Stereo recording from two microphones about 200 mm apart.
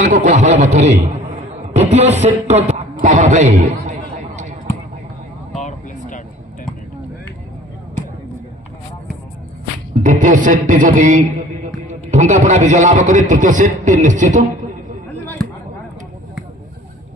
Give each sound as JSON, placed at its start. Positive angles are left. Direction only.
{"t": 0.0, "sound": "a man's voice", "side_deg": -40}
{"t": 5.6, "sound": "vehicle", "side_deg": 40}
{"t": 9.9, "sound": "music", "side_deg": -40}
{"t": 11.9, "sound": "a man's voice", "side_deg": -35}